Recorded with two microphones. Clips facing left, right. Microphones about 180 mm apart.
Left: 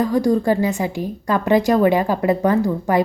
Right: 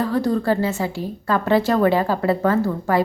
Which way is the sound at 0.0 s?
15° left (ahead or behind).